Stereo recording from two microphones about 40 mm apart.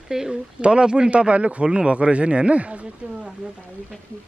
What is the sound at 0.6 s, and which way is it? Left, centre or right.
A man's voice, right.